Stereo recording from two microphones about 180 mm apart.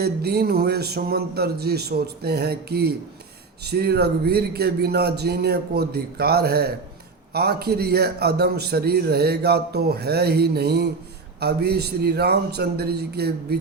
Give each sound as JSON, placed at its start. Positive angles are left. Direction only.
{"t": 0.0, "sound": "a man's voice", "side_deg": -60}